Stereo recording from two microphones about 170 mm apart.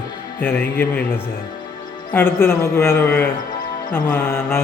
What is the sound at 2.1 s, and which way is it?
Speech, 15° left (ahead or behind).